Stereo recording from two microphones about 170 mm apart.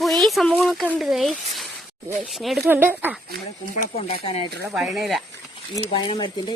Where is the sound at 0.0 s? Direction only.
Centre (ahead or behind).